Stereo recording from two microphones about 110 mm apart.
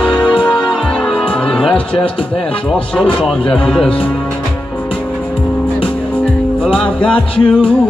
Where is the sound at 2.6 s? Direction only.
10° left (ahead or behind).